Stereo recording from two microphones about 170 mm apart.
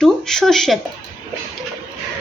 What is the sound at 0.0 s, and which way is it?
Speech, 5° left (ahead or behind).